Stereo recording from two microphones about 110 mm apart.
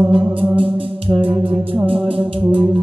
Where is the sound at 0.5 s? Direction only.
55° right (ahead or behind).